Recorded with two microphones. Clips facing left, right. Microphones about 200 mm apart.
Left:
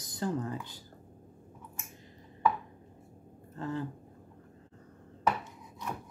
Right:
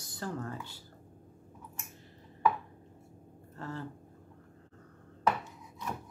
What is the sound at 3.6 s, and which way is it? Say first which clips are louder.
Speech: left 5 dB; 15° left (ahead or behind).